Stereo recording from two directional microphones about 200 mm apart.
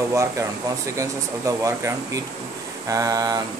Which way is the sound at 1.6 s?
15° right (ahead or behind).